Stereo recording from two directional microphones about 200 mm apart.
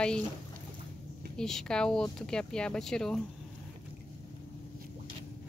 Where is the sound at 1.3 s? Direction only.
Centre (ahead or behind).